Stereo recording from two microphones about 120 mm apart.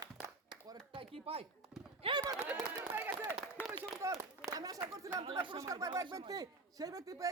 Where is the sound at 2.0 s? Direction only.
50° right (ahead or behind).